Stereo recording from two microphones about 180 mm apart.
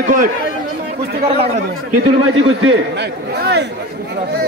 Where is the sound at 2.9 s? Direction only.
65° right (ahead or behind).